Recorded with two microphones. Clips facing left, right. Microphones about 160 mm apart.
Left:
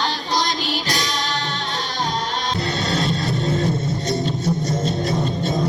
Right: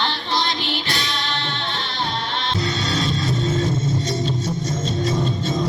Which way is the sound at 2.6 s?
60° left (ahead or behind).